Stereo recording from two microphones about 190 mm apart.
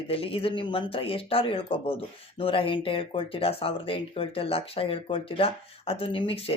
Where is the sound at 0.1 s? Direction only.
30° left (ahead or behind).